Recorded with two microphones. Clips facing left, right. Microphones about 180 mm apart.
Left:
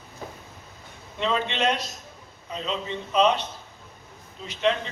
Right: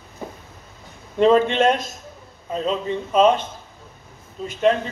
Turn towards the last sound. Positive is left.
turn(degrees=-45)  # may be behind; listen again after turning